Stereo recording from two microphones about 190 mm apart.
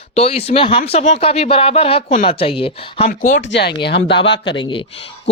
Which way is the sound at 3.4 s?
65° left (ahead or behind).